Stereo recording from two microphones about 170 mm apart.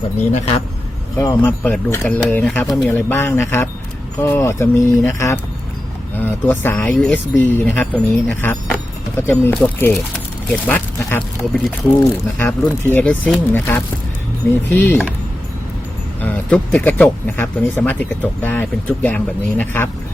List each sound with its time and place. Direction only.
0.2 s speech: 45° left (ahead or behind)
1.2 s speech: 20° left (ahead or behind)
16.2 s speech: 10° left (ahead or behind)